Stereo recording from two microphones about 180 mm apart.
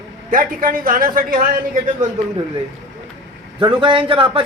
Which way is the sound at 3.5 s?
25° right (ahead or behind).